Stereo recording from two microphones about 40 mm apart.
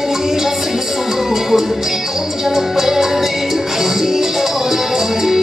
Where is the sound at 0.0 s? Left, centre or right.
Centre.